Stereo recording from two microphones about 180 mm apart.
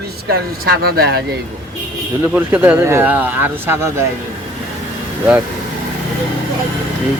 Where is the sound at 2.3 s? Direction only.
10° right (ahead or behind).